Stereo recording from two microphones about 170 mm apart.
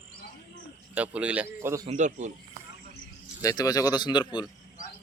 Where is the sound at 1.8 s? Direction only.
45° right (ahead or behind).